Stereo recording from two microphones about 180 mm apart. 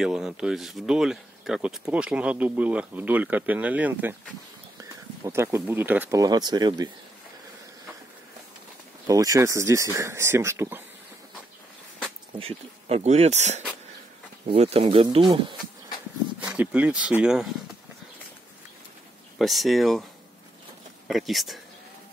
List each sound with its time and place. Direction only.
0.0 s speech: 5° right (ahead or behind); by 6.9 s 20° right (ahead or behind)
9.0 s speech: 20° right (ahead or behind)
12.4 s speech: 35° right (ahead or behind)
16.3 s speech: 5° right (ahead or behind)
19.3 s speech: centre (ahead or behind)
21.1 s speech: centre (ahead or behind)